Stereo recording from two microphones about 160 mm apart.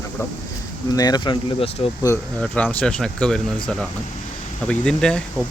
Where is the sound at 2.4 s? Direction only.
10° left (ahead or behind).